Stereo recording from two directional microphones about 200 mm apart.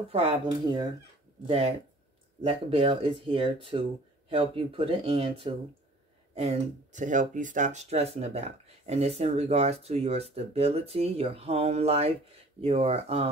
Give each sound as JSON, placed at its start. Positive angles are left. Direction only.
{"t": 0.1, "sound": "speech", "side_deg": -25}
{"t": 2.4, "sound": "speech", "side_deg": -25}